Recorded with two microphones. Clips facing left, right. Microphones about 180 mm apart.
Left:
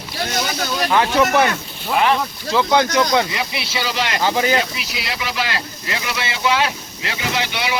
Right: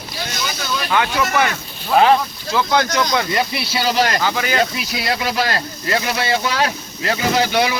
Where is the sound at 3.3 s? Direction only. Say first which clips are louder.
Right 4 dB; 40° right (ahead or behind).